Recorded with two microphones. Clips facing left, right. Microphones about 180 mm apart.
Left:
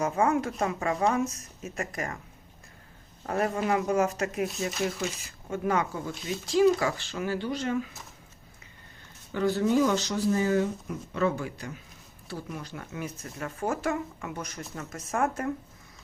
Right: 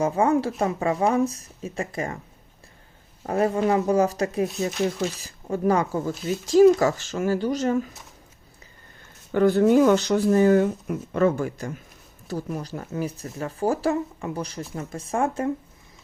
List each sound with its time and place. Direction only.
0.0 s speech: 30° right (ahead or behind)
3.2 s speech: 30° right (ahead or behind)
9.3 s speech: 55° right (ahead or behind); by 15.5 s 25° right (ahead or behind)